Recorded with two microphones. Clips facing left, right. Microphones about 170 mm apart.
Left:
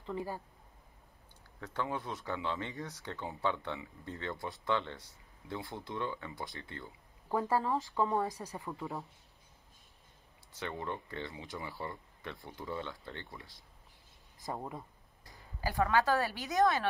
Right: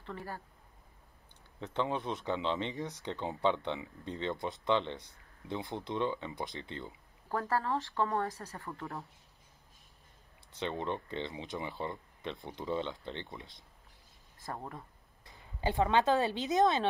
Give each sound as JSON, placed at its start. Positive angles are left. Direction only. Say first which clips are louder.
{"t": 0.0, "sound": "speech", "louder": "left 4 dB", "side_deg": 15}
{"t": 1.6, "sound": "speech", "louder": "right 3 dB", "side_deg": -20}
{"t": 7.2, "sound": "speech", "louder": "left 1 dB", "side_deg": 15}
{"t": 10.6, "sound": "speech", "louder": "right 4 dB", "side_deg": -20}
{"t": 14.4, "sound": "speech", "louder": "left 2 dB", "side_deg": 15}
{"t": 15.2, "sound": "speech", "louder": "right 4 dB", "side_deg": -25}